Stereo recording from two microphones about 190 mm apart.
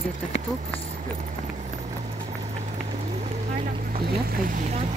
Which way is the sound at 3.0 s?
35° right (ahead or behind).